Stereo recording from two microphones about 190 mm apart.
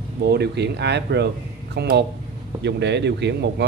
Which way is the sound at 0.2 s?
60° right (ahead or behind).